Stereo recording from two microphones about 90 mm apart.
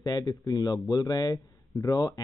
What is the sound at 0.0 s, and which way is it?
A man's voice, 40° left (ahead or behind).